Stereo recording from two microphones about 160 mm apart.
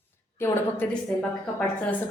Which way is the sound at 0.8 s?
10° left (ahead or behind).